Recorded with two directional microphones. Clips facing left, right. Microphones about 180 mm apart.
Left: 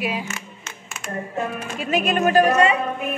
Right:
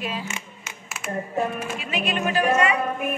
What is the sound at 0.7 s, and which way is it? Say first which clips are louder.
Speech: right 1 dB; 5° right (ahead or behind).